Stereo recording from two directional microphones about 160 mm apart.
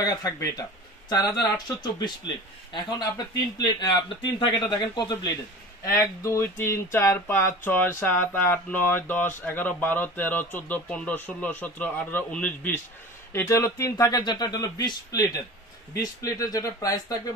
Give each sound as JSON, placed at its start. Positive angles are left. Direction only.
{"t": 0.0, "sound": "speech", "side_deg": 25}